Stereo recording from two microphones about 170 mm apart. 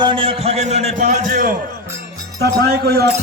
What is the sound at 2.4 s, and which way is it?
Speech, 70° right (ahead or behind).